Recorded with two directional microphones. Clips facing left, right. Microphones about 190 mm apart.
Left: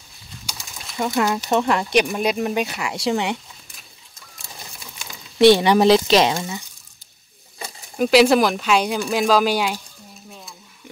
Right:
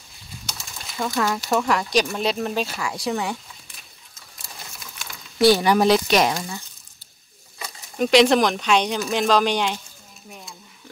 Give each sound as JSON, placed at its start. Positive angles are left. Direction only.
{"t": 0.5, "sound": "bird", "side_deg": 0}
{"t": 0.9, "sound": "speech", "side_deg": 20}
{"t": 3.1, "sound": "speech", "side_deg": 25}
{"t": 5.0, "sound": "a sound", "side_deg": 20}
{"t": 6.0, "sound": "speech", "side_deg": 25}
{"t": 8.0, "sound": "speech", "side_deg": 5}